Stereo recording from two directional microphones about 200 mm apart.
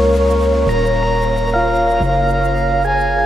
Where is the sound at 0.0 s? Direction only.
Centre (ahead or behind).